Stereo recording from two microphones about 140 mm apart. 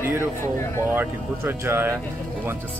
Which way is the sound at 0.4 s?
20° left (ahead or behind).